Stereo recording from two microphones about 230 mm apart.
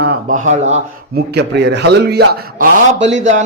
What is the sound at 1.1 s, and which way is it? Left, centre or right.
A man's voice, right.